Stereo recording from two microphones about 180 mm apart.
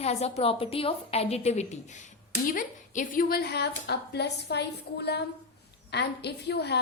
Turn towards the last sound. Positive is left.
turn(degrees=70)  # may be behind; listen again after turning